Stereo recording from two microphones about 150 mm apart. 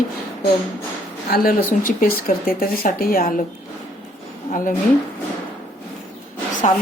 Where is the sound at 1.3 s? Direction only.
80° left.